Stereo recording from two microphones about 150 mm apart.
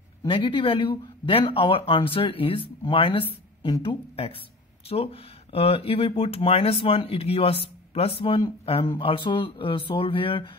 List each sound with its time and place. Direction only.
0.3 s speech: 35° left (ahead or behind)